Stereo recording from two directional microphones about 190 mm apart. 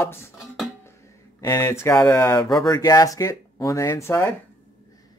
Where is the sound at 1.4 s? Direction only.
15° left (ahead or behind).